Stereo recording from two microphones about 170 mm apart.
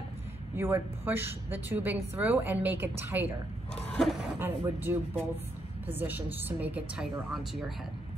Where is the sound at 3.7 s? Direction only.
Centre (ahead or behind).